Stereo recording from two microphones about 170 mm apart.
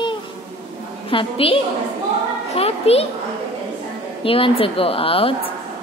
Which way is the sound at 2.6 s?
35° left (ahead or behind).